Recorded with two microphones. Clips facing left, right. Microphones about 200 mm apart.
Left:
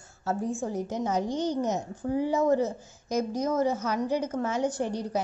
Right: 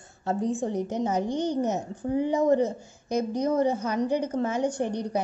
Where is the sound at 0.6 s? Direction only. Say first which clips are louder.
Right 3 dB; 15° right (ahead or behind).